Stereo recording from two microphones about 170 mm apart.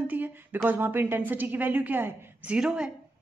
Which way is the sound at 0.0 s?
10° right (ahead or behind).